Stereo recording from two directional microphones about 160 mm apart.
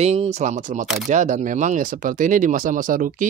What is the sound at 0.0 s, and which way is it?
Speech, 40° right (ahead or behind).